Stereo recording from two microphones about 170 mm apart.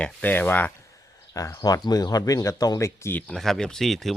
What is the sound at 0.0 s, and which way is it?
Speech, 10° left (ahead or behind).